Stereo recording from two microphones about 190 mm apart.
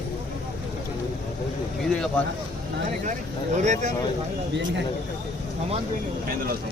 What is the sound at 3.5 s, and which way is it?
Speech, 40° right (ahead or behind).